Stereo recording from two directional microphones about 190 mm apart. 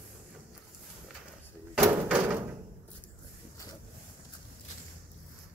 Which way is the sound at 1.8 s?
10° right (ahead or behind).